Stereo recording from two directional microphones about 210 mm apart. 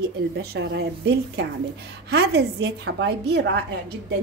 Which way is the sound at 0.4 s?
50° right (ahead or behind).